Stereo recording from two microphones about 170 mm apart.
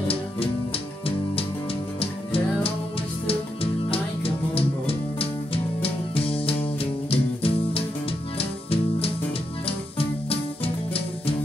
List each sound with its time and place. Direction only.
2.0 s music: 35° left (ahead or behind)
3.9 s music: 35° left (ahead or behind)